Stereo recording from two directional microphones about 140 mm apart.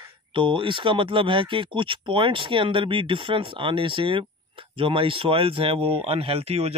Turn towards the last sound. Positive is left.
turn(degrees=-45)  # may be behind; listen again after turning